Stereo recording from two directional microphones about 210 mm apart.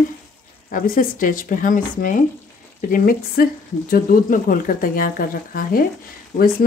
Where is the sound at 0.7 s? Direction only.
40° left (ahead or behind).